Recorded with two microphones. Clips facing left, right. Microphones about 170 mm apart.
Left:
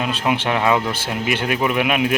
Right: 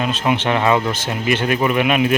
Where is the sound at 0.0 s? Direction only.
5° left (ahead or behind).